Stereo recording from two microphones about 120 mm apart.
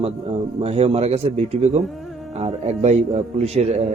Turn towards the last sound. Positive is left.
turn(degrees=-65)  # may be behind; listen again after turning